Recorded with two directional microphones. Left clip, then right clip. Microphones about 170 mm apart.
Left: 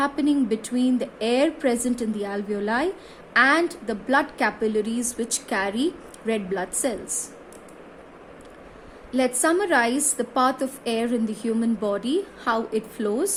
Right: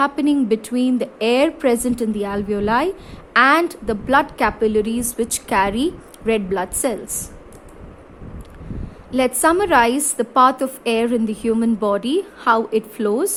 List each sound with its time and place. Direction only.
0.0 s a woman's voice: 45° right (ahead or behind)
9.1 s a woman's voice: 50° right (ahead or behind)